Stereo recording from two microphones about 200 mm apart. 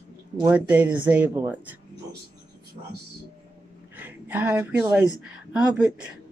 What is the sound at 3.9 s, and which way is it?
A woman's voice, 10° right (ahead or behind).